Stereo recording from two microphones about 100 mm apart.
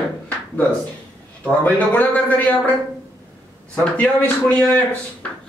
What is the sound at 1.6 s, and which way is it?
Speech, 15° left (ahead or behind).